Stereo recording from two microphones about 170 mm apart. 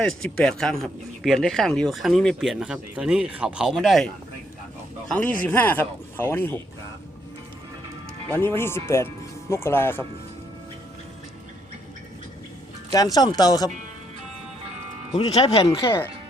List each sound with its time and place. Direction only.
0.2 s speech: 5° left (ahead or behind)
8.3 s speech: 15° left (ahead or behind)
12.9 s speech: 20° left (ahead or behind)
15.1 s speech: 35° left (ahead or behind)